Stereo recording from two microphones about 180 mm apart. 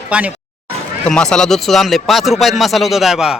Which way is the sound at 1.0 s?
5° left (ahead or behind).